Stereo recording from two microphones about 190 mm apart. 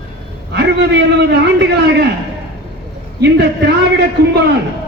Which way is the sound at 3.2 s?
60° right (ahead or behind).